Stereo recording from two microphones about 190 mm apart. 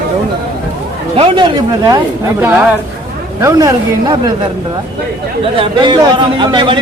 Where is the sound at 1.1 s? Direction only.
30° right (ahead or behind).